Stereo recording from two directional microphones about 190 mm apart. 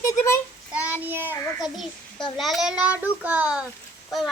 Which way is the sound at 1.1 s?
10° right (ahead or behind).